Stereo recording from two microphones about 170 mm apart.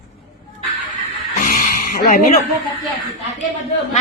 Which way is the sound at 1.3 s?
50° left (ahead or behind).